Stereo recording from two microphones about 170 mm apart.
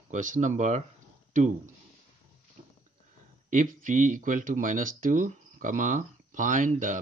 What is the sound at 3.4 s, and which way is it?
Speech, 50° right (ahead or behind).